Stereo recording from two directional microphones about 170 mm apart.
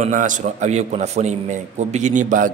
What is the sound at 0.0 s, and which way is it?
A man's voice, 50° right (ahead or behind).